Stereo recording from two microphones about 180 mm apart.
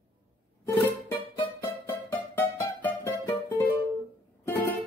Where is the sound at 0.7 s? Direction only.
10° left (ahead or behind).